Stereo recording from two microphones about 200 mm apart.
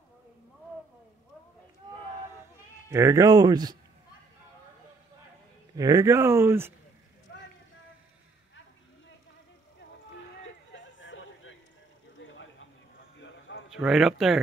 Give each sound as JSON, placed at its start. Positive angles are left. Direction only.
{"t": 2.9, "sound": "speech", "side_deg": -15}
{"t": 5.8, "sound": "speech", "side_deg": -15}
{"t": 10.7, "sound": "a sound", "side_deg": 70}
{"t": 13.7, "sound": "a man's voice", "side_deg": -5}